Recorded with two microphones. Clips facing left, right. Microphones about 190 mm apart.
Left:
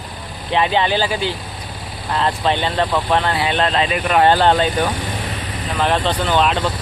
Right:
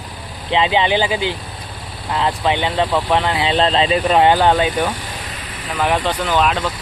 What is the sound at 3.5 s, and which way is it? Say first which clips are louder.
Speech: right 6 dB; 30° right (ahead or behind).